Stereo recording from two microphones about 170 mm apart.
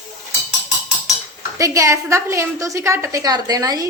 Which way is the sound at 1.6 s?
20° right (ahead or behind).